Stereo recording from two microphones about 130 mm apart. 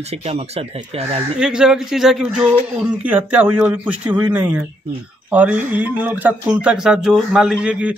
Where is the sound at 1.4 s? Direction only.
5° right (ahead or behind).